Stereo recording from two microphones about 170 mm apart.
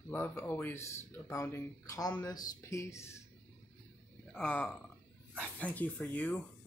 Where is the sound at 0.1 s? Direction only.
10° left (ahead or behind).